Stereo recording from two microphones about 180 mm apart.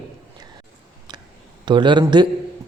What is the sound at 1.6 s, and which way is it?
Speech, 25° right (ahead or behind).